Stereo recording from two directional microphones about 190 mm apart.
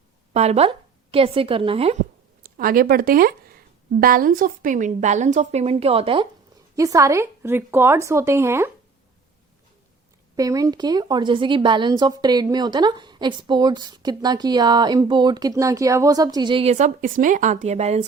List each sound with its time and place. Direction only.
0.3 s a woman's voice: 35° right (ahead or behind)
2.4 s a woman's voice: 50° right (ahead or behind); by 6.2 s 30° right (ahead or behind)
6.7 s speech: 15° right (ahead or behind)
10.3 s a woman's voice: 20° right (ahead or behind); by 18.0 s 35° right (ahead or behind)